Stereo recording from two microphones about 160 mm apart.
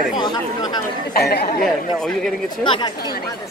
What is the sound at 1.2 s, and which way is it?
Speech, 80° left.